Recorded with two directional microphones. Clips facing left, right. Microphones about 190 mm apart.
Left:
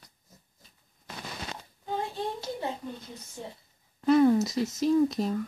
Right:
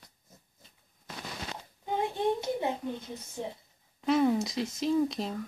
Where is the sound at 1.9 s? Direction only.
20° right (ahead or behind).